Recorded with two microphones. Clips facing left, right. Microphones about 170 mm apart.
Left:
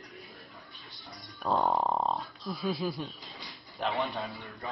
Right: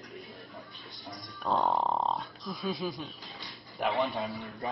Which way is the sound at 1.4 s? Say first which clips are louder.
Left 1 dB; centre (ahead or behind).